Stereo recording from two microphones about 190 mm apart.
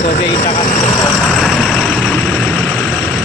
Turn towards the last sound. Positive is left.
turn(degrees=0)  # may be behind; listen again after turning